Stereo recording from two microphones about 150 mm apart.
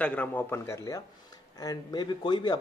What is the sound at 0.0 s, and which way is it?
A man's voice, 10° left (ahead or behind).